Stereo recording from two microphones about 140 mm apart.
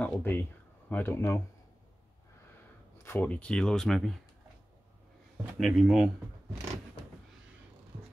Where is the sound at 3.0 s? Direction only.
15° left (ahead or behind).